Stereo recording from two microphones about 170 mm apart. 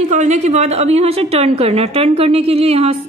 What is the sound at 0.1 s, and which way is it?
A woman's voice, 45° right (ahead or behind).